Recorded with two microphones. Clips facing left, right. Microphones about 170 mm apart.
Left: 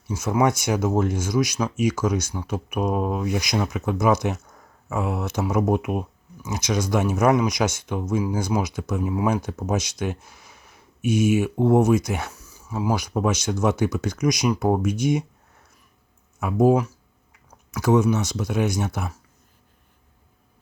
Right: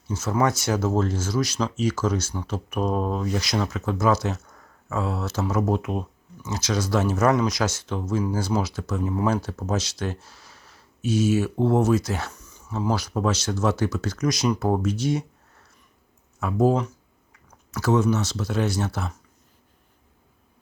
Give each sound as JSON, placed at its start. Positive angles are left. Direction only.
{"t": 0.1, "sound": "speech", "side_deg": 10}
{"t": 16.4, "sound": "speech", "side_deg": 15}